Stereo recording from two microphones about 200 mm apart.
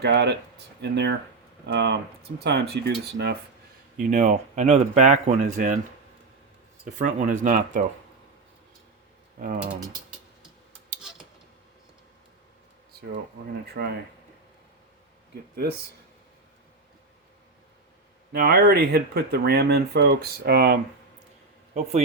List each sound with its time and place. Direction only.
0.0 s speech: 55° right (ahead or behind)
4.1 s speech: 35° right (ahead or behind)
6.8 s speech: 35° right (ahead or behind)
9.4 s speech: 40° right (ahead or behind)
13.8 s speech: 55° right (ahead or behind)
18.3 s speech: 50° right (ahead or behind)
21.7 s speech: 35° right (ahead or behind)